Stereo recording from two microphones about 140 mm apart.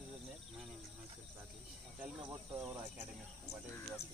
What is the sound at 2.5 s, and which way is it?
Speech, 15° right (ahead or behind).